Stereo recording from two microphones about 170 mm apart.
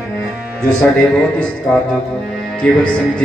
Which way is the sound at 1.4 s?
5° left (ahead or behind).